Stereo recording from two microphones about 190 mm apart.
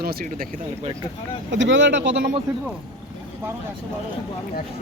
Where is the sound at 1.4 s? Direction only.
75° right (ahead or behind).